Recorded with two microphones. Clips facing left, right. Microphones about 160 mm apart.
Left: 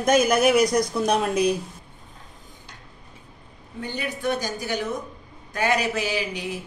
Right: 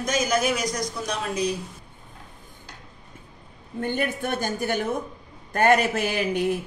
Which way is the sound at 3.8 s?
55° right (ahead or behind).